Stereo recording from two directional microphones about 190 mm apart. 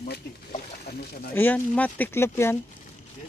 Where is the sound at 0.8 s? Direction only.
55° left (ahead or behind).